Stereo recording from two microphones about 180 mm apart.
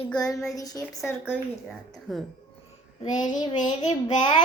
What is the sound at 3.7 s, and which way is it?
Speech, 25° left (ahead or behind).